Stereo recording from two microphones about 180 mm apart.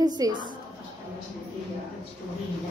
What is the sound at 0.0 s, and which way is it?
Speech, 20° right (ahead or behind).